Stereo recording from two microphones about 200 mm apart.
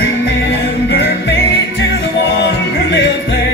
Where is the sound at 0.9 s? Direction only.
60° left (ahead or behind).